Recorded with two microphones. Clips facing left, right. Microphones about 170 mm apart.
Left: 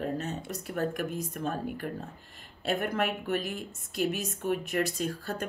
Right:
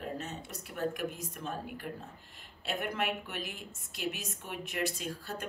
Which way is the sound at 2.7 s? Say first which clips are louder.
Left 5 dB; 45° left (ahead or behind).